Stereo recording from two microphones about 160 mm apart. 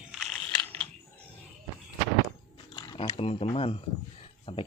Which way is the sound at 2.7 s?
30° left (ahead or behind).